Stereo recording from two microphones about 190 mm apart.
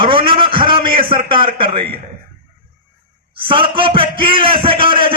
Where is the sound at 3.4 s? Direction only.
25° right (ahead or behind).